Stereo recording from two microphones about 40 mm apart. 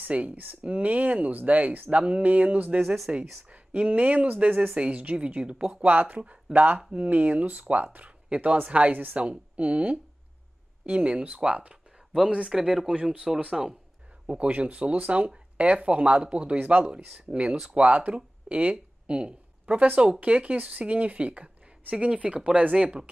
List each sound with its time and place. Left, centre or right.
0.1 s speech: right
1.9 s speech: right
2.2 s speech: right
3.1 s speech: right
5.7 s speech: right
12.5 s speech: centre
12.8 s speech: right
16.5 s speech: right
16.8 s speech: right